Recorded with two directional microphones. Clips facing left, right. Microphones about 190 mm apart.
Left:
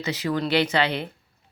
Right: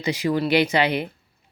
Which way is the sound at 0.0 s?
15° right (ahead or behind).